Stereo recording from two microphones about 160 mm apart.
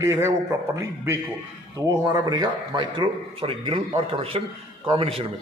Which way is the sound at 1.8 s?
20° right (ahead or behind).